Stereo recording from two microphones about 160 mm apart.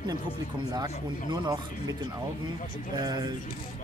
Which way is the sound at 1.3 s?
25° right (ahead or behind).